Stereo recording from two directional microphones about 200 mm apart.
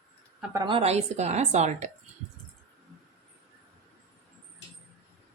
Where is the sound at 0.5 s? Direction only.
25° right (ahead or behind).